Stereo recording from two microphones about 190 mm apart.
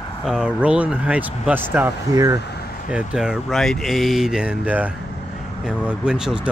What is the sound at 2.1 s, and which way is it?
Speech, 20° right (ahead or behind).